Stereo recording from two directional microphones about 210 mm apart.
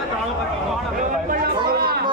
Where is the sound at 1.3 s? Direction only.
45° right (ahead or behind).